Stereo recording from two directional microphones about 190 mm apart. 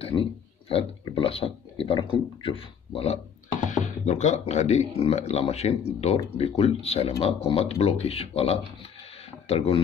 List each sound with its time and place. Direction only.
0.0 s speech: 30° left (ahead or behind)